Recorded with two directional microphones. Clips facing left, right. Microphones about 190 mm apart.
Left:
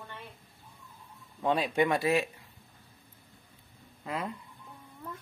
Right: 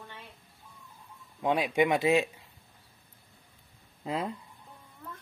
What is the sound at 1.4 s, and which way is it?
Speech, 15° right (ahead or behind).